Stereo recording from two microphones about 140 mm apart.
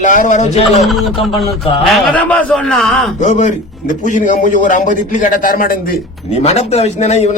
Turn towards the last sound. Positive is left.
turn(degrees=55)  # may be behind; listen again after turning